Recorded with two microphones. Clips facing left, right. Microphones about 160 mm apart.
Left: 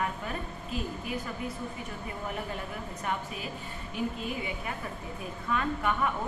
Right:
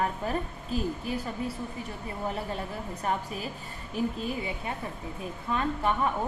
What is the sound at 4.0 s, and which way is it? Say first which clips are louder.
Speech: right 3 dB; 35° right (ahead or behind).